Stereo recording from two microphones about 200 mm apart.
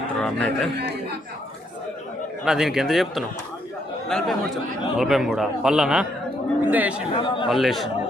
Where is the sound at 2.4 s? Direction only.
Centre (ahead or behind).